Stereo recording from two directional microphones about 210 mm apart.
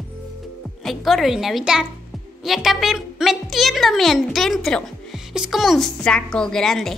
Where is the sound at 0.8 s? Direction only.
Centre (ahead or behind).